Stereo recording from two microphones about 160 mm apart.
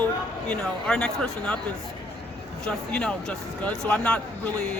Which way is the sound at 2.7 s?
5° left (ahead or behind).